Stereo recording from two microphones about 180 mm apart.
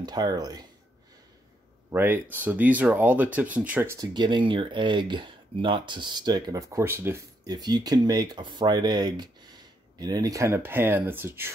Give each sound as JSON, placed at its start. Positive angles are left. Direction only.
{"t": 0.0, "sound": "speech", "side_deg": -20}
{"t": 1.9, "sound": "speech", "side_deg": -10}
{"t": 4.1, "sound": "speech", "side_deg": -25}